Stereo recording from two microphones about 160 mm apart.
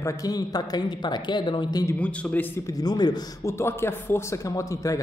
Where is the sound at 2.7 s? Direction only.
25° left (ahead or behind).